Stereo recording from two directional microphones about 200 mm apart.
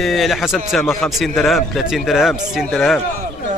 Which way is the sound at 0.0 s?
Centre (ahead or behind).